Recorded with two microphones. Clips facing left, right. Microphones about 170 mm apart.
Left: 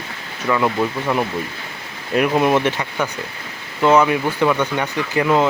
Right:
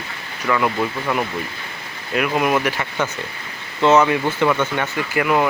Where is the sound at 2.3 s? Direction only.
25° left (ahead or behind).